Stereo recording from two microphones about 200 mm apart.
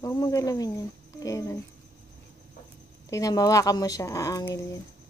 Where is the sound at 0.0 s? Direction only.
15° left (ahead or behind).